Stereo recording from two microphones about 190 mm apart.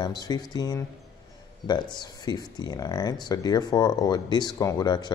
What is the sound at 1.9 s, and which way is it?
Speech, 20° left (ahead or behind).